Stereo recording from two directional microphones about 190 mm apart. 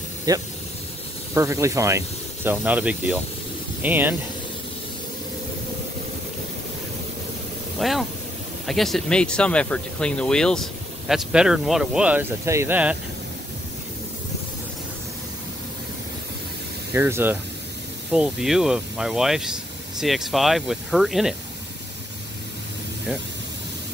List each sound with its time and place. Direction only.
0.3 s speech: 20° right (ahead or behind)
7.8 s speech: centre (ahead or behind)
16.9 s speech: 10° right (ahead or behind)